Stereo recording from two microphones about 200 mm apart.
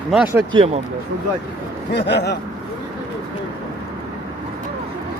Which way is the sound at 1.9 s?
55° left (ahead or behind).